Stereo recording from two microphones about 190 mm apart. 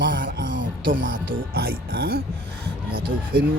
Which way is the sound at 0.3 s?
75° right (ahead or behind).